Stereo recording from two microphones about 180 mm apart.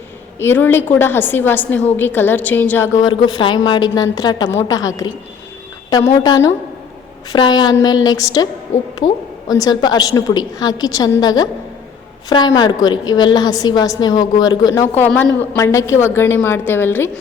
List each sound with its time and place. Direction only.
0.3 s a woman's voice: 10° left (ahead or behind)
6.2 s a woman's voice: 20° left (ahead or behind)
9.5 s a woman's voice: 20° left (ahead or behind)
14.8 s a woman's voice: 10° left (ahead or behind)